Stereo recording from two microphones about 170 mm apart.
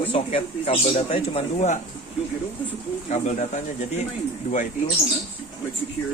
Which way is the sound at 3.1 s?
45° left (ahead or behind).